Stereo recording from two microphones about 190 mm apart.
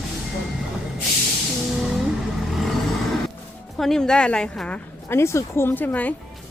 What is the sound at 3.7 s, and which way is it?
Speech, centre (ahead or behind).